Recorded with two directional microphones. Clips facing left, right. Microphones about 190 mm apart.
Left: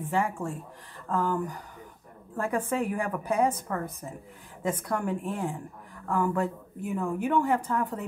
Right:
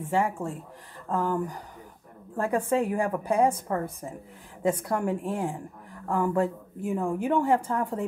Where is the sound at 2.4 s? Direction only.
30° right (ahead or behind).